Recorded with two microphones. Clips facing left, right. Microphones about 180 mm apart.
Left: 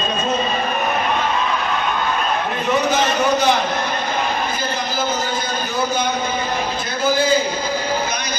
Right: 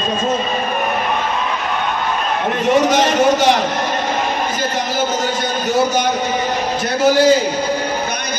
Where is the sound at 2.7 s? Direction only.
85° right.